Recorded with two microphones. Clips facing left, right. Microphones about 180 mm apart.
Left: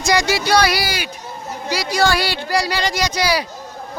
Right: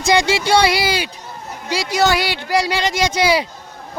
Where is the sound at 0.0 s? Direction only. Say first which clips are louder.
Right 2 dB; 25° right (ahead or behind).